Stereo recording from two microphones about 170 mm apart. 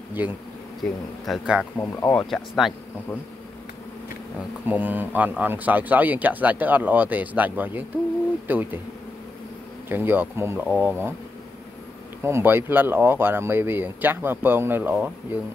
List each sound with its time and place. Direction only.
0.1 s speech: 10° right (ahead or behind)
1.8 s speech: 15° left (ahead or behind)
2.1 s speech: centre (ahead or behind)
4.6 s speech: 10° right (ahead or behind)
9.8 s speech: 10° right (ahead or behind)
12.2 s speech: 15° right (ahead or behind)